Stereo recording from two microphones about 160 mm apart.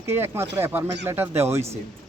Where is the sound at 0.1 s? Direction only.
15° right (ahead or behind).